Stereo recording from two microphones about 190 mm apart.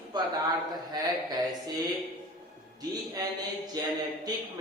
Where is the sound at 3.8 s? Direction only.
20° right (ahead or behind).